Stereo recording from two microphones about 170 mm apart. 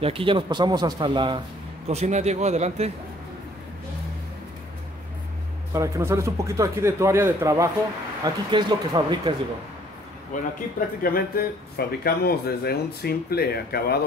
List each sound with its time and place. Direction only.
0.0 s speech: 30° right (ahead or behind)
1.9 s a man's voice: 40° right (ahead or behind)
5.7 s a man's voice: 15° right (ahead or behind)
10.3 s speech: 45° left (ahead or behind)
11.0 s speech: 60° left (ahead or behind)